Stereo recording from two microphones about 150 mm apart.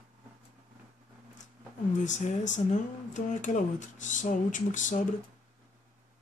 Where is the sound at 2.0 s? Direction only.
55° left (ahead or behind).